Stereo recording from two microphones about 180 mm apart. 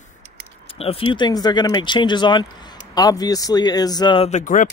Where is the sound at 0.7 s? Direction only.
30° left (ahead or behind).